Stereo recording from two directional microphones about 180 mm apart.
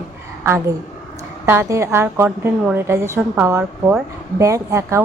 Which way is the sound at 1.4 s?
15° right (ahead or behind).